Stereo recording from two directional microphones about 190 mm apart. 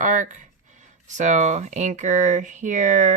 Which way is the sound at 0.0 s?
40° right (ahead or behind).